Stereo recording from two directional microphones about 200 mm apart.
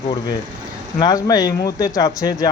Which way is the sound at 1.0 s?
20° left (ahead or behind).